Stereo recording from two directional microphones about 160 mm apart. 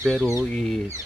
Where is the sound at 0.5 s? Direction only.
Centre (ahead or behind).